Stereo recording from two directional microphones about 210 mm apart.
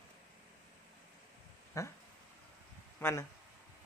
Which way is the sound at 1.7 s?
15° left (ahead or behind).